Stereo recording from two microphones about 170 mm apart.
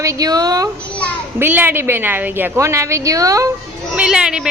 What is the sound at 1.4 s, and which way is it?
A woman's voice, 10° right (ahead or behind).